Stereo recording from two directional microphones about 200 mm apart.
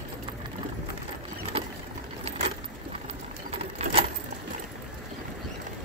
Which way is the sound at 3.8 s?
35° right (ahead or behind).